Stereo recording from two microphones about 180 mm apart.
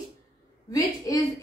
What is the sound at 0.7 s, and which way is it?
Speech, 20° left (ahead or behind).